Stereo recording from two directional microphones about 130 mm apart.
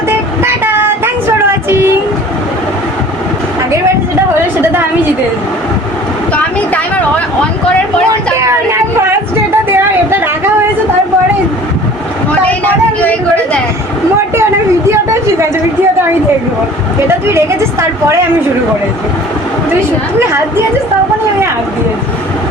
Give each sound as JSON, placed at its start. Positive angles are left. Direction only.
{"t": 0.4, "sound": "train", "side_deg": -15}
{"t": 9.6, "sound": "a sound", "side_deg": -15}
{"t": 12.5, "sound": "vehicle", "side_deg": 10}
{"t": 17.1, "sound": "a woman's voice", "side_deg": -20}